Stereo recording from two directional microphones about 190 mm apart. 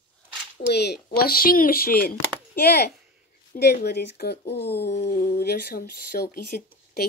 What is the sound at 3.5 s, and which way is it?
Speech, 60° left (ahead or behind).